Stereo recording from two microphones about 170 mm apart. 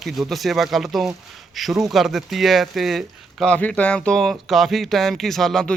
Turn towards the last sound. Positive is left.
turn(degrees=5)  # may be behind; listen again after turning